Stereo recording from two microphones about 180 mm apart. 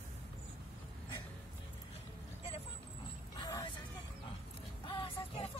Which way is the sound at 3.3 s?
20° left (ahead or behind).